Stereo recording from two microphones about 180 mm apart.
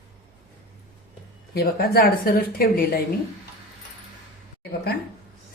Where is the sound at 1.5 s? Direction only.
60° left (ahead or behind).